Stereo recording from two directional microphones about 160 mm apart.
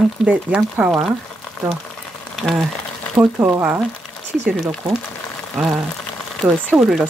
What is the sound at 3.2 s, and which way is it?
Speech, 15° right (ahead or behind).